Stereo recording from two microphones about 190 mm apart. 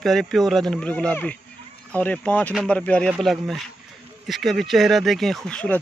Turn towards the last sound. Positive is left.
turn(degrees=5)  # may be behind; listen again after turning